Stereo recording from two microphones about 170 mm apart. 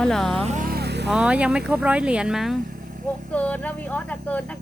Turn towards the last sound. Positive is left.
turn(degrees=10)  # may be behind; listen again after turning